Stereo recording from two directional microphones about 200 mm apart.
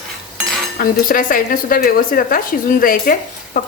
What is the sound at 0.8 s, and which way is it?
Speech, 45° left (ahead or behind).